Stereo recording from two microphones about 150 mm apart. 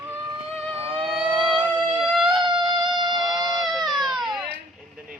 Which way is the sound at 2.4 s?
30° right (ahead or behind).